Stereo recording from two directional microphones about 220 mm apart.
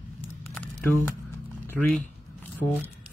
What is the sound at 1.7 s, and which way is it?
Speech, 5° left (ahead or behind).